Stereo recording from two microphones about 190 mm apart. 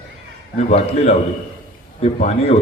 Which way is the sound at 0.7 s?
35° left (ahead or behind).